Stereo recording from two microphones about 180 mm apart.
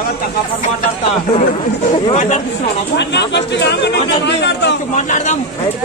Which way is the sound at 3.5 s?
75° left (ahead or behind).